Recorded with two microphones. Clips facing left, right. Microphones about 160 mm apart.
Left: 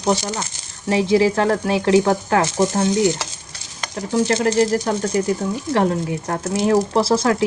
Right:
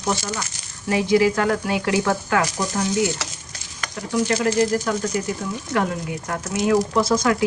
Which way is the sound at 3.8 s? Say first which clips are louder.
Left 3 dB; 25° left (ahead or behind).